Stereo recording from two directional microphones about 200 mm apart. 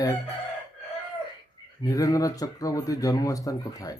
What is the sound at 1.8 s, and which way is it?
Speech, 15° left (ahead or behind).